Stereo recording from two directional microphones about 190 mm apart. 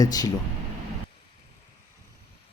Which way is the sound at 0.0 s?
20° left (ahead or behind).